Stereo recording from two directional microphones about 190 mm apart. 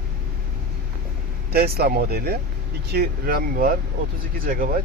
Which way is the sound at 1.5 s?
55° right (ahead or behind).